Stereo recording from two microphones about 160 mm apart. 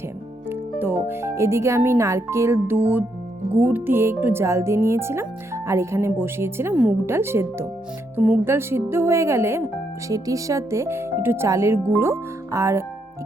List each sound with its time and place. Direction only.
0.5 s speech: 15° right (ahead or behind)